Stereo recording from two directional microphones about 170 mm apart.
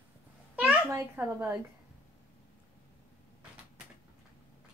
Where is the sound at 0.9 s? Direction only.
15° right (ahead or behind).